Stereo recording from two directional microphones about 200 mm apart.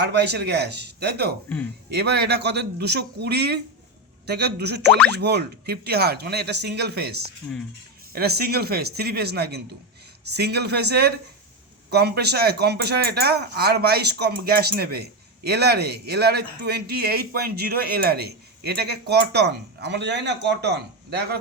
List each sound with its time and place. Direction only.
0.0 s a man's voice: 55° right (ahead or behind)